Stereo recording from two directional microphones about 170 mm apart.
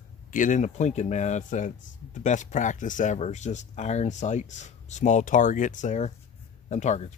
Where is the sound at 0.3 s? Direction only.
50° left (ahead or behind).